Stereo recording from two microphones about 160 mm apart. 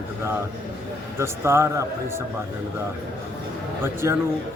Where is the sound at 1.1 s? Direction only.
15° right (ahead or behind).